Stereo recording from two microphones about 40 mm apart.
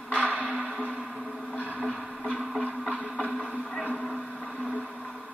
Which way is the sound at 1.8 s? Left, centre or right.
Centre.